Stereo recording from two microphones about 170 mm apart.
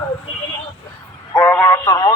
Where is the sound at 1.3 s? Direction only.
15° left (ahead or behind).